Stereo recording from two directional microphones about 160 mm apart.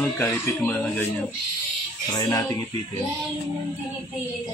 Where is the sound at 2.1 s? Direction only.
25° left (ahead or behind).